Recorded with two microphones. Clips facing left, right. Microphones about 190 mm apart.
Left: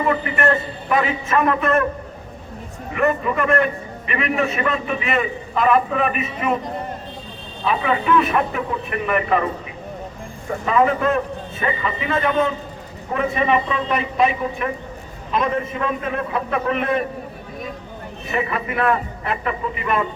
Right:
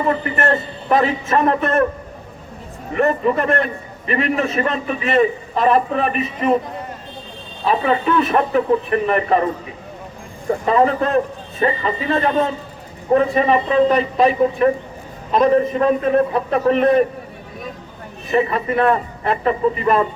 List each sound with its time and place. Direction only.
0.1 s a man's voice: 35° right (ahead or behind)
2.9 s a man's voice: 35° right (ahead or behind)
7.6 s a man's voice: 35° right (ahead or behind)
10.7 s a man's voice: 35° right (ahead or behind)
18.3 s a man's voice: 35° right (ahead or behind)